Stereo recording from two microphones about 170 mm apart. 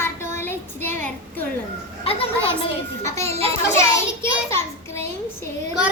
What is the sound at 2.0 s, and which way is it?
Children playing, 35° left (ahead or behind).